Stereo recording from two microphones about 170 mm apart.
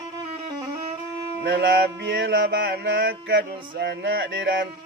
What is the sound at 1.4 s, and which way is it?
Mantra, 90° right.